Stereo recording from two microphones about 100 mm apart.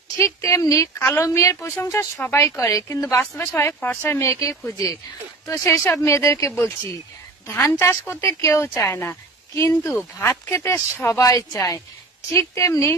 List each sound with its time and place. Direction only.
0.4 s speech: 30° left (ahead or behind)
3.1 s speech: 20° left (ahead or behind)
4.2 s speech: 30° left (ahead or behind)